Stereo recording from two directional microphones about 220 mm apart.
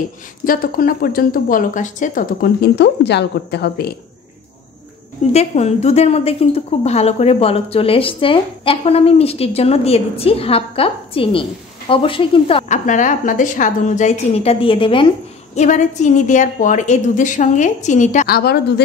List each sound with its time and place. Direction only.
0.5 s speech: 40° left (ahead or behind)
5.3 s a woman's voice: 30° left (ahead or behind)
15.5 s speech: 35° left (ahead or behind)